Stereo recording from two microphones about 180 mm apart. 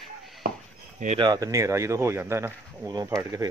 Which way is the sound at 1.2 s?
20° right (ahead or behind).